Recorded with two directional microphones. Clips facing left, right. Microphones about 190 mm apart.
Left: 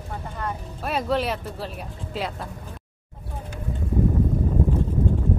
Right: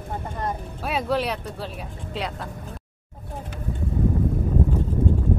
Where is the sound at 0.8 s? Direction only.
Centre (ahead or behind).